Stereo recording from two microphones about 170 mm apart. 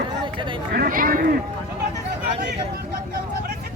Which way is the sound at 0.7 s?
60° right (ahead or behind).